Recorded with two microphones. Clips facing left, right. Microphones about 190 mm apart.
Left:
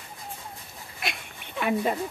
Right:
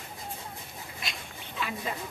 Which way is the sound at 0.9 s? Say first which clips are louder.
Left 7 dB; 60° left (ahead or behind).